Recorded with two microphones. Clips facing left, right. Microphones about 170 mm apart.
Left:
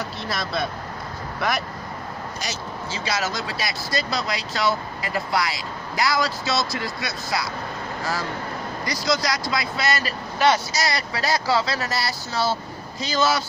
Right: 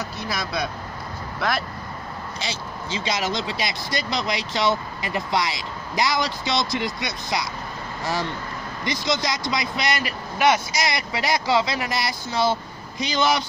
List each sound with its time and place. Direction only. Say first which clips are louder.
0.3 s speech: left 1 dB; centre (ahead or behind)
2.9 s speech: right 2 dB; 20° right (ahead or behind)